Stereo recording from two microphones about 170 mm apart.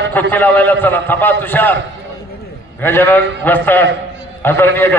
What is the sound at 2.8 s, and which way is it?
A man's voice, 10° left (ahead or behind).